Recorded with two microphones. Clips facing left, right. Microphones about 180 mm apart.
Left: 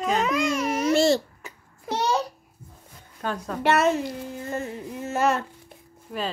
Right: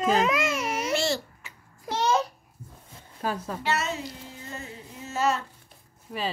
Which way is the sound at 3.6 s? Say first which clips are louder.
Left 9 dB; 55° left (ahead or behind).